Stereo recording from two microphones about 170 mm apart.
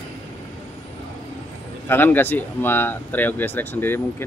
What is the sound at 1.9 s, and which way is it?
Speech, 10° left (ahead or behind).